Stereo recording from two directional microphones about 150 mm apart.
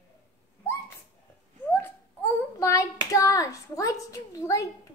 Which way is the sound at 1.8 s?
20° left (ahead or behind).